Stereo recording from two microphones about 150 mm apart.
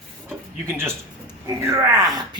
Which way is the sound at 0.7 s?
15° right (ahead or behind).